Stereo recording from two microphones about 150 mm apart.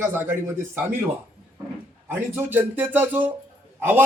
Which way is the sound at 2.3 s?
15° right (ahead or behind).